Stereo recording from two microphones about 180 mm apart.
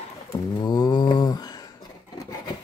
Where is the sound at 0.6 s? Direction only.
20° left (ahead or behind).